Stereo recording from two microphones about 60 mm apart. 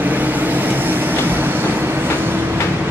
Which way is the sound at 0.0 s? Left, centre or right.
Right.